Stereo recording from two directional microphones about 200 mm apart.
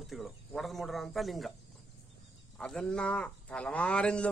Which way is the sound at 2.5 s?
5° left (ahead or behind).